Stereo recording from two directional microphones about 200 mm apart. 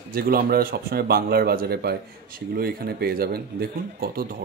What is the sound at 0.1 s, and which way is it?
Speech, 45° right (ahead or behind).